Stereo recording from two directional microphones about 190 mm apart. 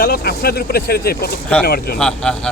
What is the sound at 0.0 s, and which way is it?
Speech, 55° left (ahead or behind).